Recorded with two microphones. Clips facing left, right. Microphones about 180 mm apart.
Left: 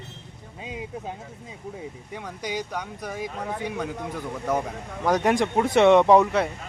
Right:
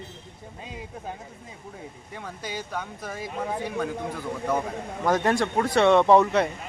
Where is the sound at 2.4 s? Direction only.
15° left (ahead or behind).